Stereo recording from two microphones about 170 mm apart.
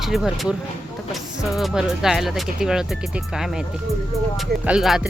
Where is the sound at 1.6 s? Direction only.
Centre (ahead or behind).